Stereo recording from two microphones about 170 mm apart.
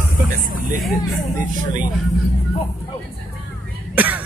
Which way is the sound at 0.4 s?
55° right (ahead or behind).